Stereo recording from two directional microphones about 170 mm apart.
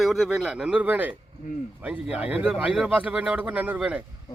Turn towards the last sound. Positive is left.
turn(degrees=-5)  # may be behind; listen again after turning